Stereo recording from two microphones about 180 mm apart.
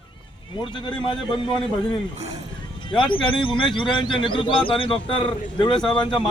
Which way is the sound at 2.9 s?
25° left (ahead or behind).